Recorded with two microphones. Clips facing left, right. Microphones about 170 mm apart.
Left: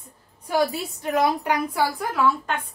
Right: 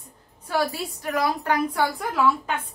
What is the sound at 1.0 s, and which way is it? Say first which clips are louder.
Speech: left 3 dB; 20° left (ahead or behind).